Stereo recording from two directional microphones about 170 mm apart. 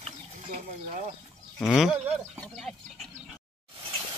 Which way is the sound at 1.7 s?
Centre (ahead or behind).